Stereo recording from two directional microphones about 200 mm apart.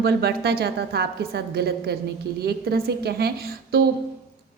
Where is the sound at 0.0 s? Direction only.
55° right (ahead or behind).